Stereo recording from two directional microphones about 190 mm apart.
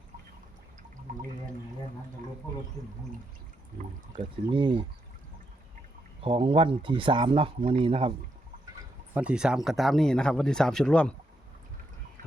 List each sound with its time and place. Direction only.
2.8 s speech: 30° right (ahead or behind)
4.4 s speech: 25° right (ahead or behind)
6.2 s speech: 30° right (ahead or behind)
9.1 s speech: 5° right (ahead or behind)